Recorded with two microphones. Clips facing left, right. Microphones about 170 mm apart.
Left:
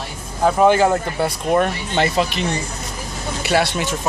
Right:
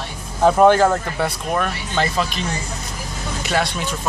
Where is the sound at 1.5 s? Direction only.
20° left (ahead or behind).